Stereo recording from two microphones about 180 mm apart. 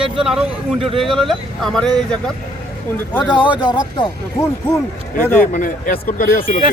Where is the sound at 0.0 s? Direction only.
5° right (ahead or behind).